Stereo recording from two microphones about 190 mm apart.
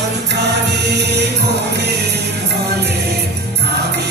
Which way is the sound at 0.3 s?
60° right (ahead or behind).